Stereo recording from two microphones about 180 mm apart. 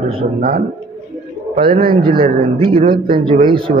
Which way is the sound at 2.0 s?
30° right (ahead or behind).